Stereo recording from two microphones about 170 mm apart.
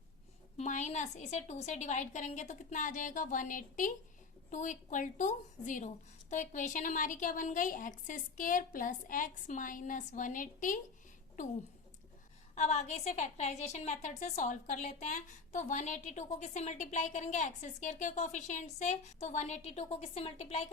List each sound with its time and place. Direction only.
0.5 s a woman's voice: 45° left (ahead or behind)
12.5 s a woman's voice: 40° left (ahead or behind)